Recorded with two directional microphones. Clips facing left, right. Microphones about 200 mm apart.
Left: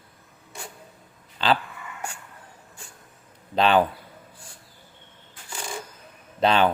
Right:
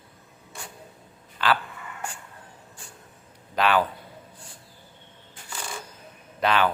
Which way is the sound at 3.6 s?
25° left (ahead or behind).